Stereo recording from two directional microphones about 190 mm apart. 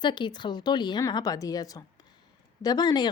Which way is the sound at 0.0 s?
25° left (ahead or behind).